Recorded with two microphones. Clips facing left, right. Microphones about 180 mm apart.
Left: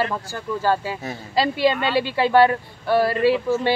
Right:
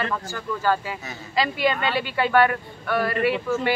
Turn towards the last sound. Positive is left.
turn(degrees=30)  # may be behind; listen again after turning